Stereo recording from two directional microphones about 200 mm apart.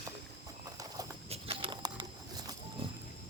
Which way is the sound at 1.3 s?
25° right (ahead or behind).